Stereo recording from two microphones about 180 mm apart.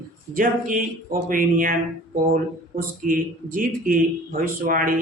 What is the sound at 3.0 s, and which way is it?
Speech, 50° right (ahead or behind).